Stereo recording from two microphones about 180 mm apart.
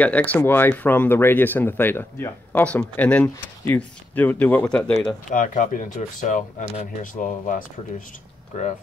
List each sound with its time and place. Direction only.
0.0 s speech: 10° left (ahead or behind)
5.3 s speech: 45° left (ahead or behind)